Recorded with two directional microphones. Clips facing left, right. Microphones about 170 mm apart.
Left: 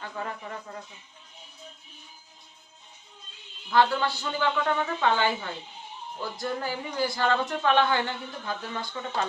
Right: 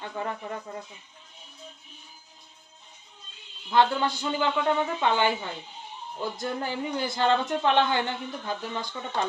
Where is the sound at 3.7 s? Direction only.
20° right (ahead or behind).